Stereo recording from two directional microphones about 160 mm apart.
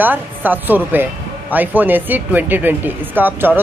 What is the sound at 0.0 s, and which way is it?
Speech, 10° right (ahead or behind).